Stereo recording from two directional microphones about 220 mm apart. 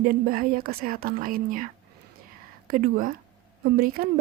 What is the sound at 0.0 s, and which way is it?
A woman's voice, 40° right (ahead or behind).